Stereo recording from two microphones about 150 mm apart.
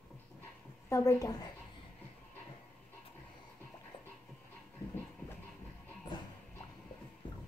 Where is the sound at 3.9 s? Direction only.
35° left (ahead or behind).